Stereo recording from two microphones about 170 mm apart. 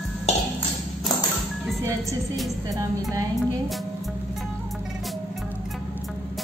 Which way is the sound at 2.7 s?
20° right (ahead or behind).